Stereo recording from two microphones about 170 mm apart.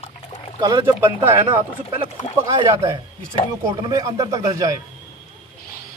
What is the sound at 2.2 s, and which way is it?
Speech, 35° left (ahead or behind).